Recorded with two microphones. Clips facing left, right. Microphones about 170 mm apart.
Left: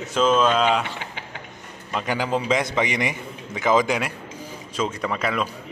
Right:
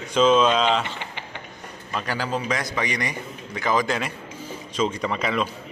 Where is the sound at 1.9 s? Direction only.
15° left (ahead or behind).